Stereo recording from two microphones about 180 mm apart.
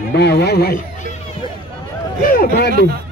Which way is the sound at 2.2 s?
55° left (ahead or behind).